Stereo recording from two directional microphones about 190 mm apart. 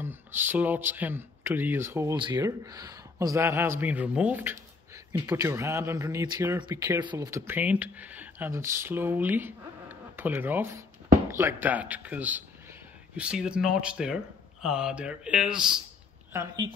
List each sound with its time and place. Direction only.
0.0 s speech: 10° right (ahead or behind)
16.3 s a woman's voice: 20° right (ahead or behind)